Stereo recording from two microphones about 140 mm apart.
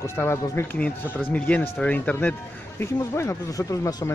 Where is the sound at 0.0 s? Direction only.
20° left (ahead or behind).